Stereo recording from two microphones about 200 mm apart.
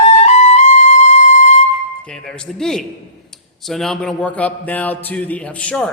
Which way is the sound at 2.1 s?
5° left (ahead or behind).